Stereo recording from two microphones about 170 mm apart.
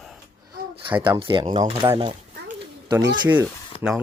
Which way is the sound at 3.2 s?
10° right (ahead or behind).